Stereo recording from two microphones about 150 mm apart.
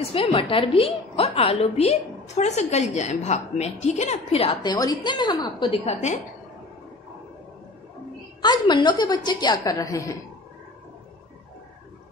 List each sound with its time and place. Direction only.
0.1 s a woman's voice: 40° left (ahead or behind)
8.4 s a woman's voice: 30° left (ahead or behind)